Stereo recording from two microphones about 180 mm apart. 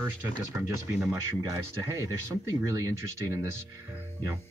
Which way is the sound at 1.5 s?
20° right (ahead or behind).